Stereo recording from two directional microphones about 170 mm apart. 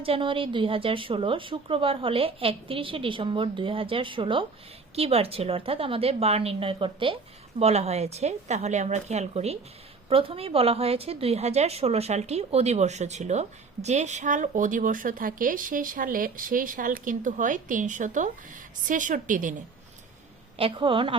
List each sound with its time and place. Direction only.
0.0 s a woman's voice: 30° right (ahead or behind); by 19.5 s 50° right (ahead or behind)
20.6 s a woman's voice: 30° right (ahead or behind)